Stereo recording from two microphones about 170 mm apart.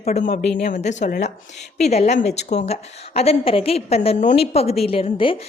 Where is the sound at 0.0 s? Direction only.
45° left (ahead or behind).